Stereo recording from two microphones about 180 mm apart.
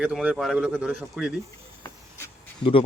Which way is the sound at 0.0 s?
5° right (ahead or behind).